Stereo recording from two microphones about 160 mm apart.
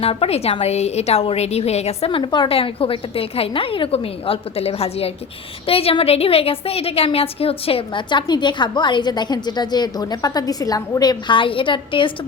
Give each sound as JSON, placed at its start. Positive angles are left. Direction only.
{"t": 0.0, "sound": "a woman's voice", "side_deg": 35}